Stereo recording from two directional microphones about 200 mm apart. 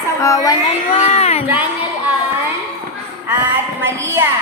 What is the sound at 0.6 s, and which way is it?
Speech, 30° left (ahead or behind).